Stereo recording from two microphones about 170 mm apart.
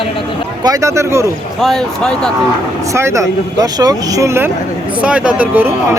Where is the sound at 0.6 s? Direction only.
20° right (ahead or behind).